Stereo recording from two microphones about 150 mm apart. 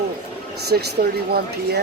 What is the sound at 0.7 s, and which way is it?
Speech, 90° right.